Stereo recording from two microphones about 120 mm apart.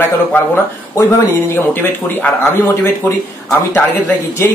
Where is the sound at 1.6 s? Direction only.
20° left (ahead or behind).